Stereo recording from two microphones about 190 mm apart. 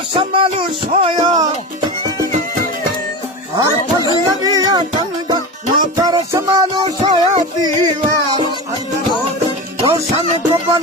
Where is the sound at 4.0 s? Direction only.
20° left (ahead or behind).